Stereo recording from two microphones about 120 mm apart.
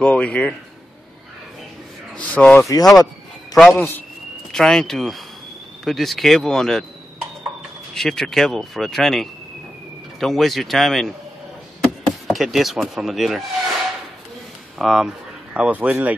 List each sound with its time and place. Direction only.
0.0 s speech: 10° left (ahead or behind)
2.1 s speech: 10° left (ahead or behind)
2.7 s speech: 30° left (ahead or behind)
3.5 s speech: 10° left (ahead or behind)
4.5 s speech: 5° left (ahead or behind)
7.9 s speech: 5° left (ahead or behind)